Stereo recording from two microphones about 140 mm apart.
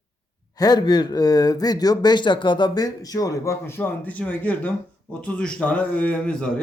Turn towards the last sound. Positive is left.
turn(degrees=5)  # may be behind; listen again after turning